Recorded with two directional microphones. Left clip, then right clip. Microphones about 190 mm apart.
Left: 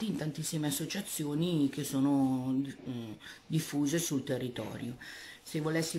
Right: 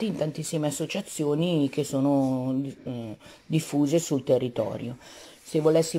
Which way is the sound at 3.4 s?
10° right (ahead or behind).